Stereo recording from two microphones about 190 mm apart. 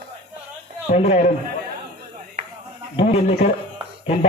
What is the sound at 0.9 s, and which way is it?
Speech, 35° left (ahead or behind).